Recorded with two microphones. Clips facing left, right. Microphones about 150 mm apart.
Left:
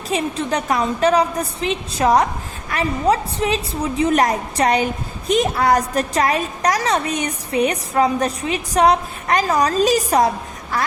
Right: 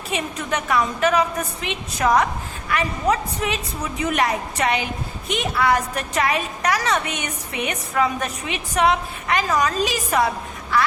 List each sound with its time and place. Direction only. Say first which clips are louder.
0.1 s a woman's voice: left 5 dB; 35° left (ahead or behind)